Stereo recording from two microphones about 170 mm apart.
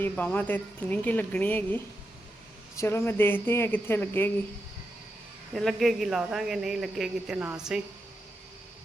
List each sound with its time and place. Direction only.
0.0 s speech: 10° left (ahead or behind)
5.5 s speech: centre (ahead or behind)